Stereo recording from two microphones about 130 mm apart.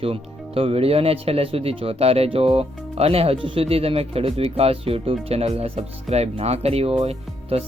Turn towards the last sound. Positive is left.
turn(degrees=-50)  # may be behind; listen again after turning